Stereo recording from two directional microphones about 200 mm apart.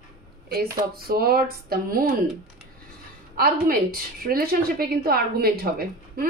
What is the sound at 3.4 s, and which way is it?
A woman's voice, 45° right (ahead or behind).